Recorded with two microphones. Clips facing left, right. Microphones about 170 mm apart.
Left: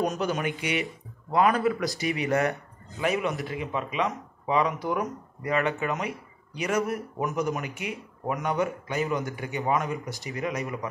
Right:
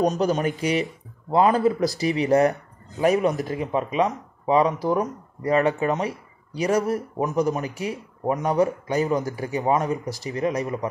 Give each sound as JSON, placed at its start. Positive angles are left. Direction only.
{"t": 0.0, "sound": "speech", "side_deg": -35}